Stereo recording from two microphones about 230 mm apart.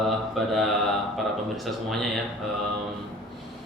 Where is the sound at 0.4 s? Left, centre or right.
Centre.